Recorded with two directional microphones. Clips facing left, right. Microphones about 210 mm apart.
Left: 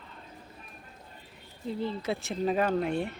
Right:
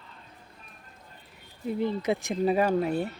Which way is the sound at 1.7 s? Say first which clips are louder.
Right 4 dB; 15° right (ahead or behind).